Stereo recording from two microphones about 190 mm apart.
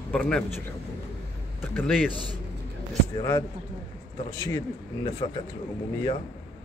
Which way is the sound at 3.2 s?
20° left (ahead or behind).